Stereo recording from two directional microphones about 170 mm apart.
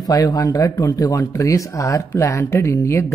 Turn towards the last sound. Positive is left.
turn(degrees=15)  # may be behind; listen again after turning